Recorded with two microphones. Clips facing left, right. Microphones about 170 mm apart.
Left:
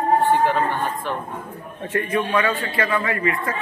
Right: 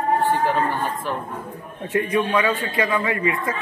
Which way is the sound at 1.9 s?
15° right (ahead or behind).